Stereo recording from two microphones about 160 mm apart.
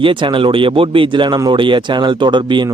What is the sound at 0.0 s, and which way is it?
A man's voice, 30° right (ahead or behind).